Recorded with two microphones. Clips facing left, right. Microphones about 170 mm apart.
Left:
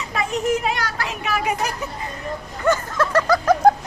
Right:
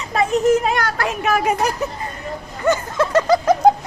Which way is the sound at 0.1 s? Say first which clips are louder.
Right 6 dB; 40° right (ahead or behind).